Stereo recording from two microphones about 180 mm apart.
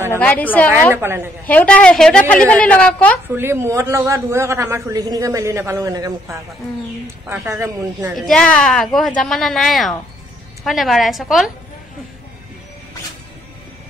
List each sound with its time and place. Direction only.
0.2 s a woman's voice: 10° left (ahead or behind)
0.9 s a man's voice: 10° right (ahead or behind)
1.4 s a woman's voice: 10° left (ahead or behind)
3.3 s a man's voice: 15° right (ahead or behind)
7.4 s a man's voice: 15° right (ahead or behind)
8.1 s a woman's voice: 5° left (ahead or behind)